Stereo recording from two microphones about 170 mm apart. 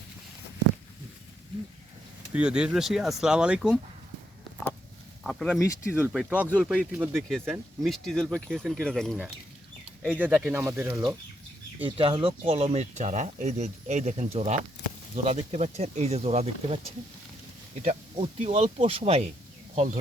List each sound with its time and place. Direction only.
2.3 s speech: 5° right (ahead or behind)
5.2 s speech: centre (ahead or behind)
5.9 s speech: 10° right (ahead or behind)
7.9 s speech: centre (ahead or behind)
10.1 s speech: 10° right (ahead or behind)
11.8 s speech: 30° right (ahead or behind)
17.8 s speech: 40° right (ahead or behind)
19.7 s speech: 45° right (ahead or behind)